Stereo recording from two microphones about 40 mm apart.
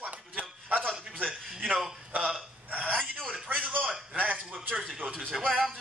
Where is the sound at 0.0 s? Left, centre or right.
Right.